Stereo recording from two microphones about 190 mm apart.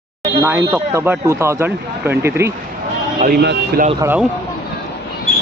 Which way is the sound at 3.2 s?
55° right (ahead or behind).